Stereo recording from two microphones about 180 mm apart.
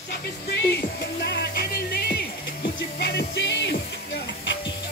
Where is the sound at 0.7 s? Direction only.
65° left (ahead or behind).